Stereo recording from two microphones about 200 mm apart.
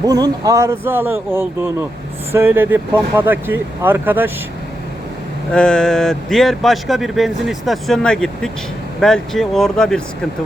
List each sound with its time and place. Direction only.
0.0 s speech: 20° right (ahead or behind)
5.5 s speech: 5° left (ahead or behind)